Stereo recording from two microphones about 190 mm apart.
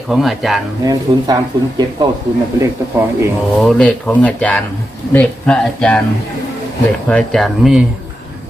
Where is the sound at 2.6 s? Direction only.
15° right (ahead or behind).